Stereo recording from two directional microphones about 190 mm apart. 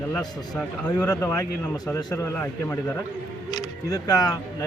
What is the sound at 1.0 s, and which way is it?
A man's voice, 15° left (ahead or behind).